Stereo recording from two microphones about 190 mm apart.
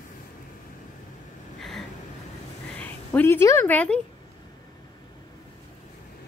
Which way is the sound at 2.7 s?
10° left (ahead or behind).